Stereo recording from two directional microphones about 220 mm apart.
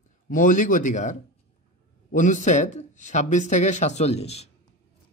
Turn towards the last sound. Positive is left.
turn(degrees=30)  # may be behind; listen again after turning